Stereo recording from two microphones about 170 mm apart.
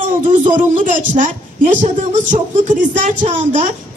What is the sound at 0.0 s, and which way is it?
Speech, 50° right (ahead or behind).